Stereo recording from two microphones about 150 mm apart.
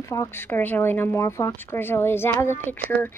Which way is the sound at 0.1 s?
20° left (ahead or behind).